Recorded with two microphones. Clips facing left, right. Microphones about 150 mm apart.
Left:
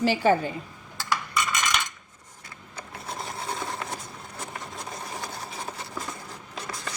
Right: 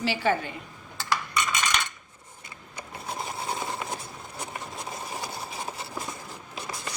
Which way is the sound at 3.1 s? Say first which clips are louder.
Right 1 dB; 5° right (ahead or behind).